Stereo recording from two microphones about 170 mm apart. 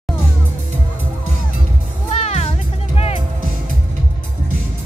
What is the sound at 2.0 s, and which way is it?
Music, 35° left (ahead or behind).